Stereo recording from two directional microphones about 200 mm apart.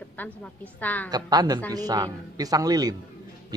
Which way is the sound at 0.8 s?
10° left (ahead or behind).